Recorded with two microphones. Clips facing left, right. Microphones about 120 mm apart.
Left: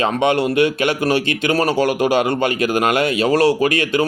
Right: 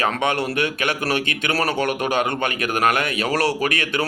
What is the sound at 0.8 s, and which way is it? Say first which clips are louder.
Speech: left 5 dB; 30° left (ahead or behind).